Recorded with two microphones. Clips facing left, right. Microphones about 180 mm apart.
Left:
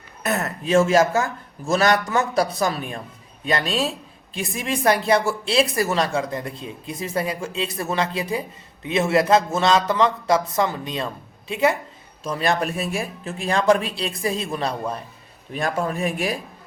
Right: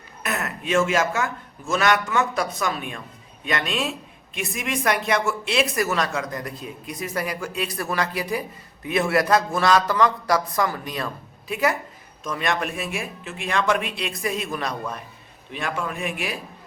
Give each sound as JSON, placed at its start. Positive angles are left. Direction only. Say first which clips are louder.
{"t": 0.2, "sound": "a woman's voice", "louder": "left 4 dB", "side_deg": 35}